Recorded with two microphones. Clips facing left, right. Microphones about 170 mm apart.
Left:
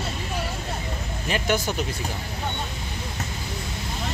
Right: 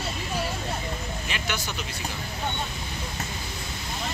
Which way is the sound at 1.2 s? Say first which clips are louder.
Left 12 dB; 45° left (ahead or behind).